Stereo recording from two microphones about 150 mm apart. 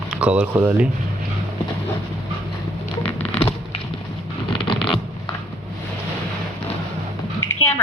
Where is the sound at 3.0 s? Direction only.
40° left (ahead or behind).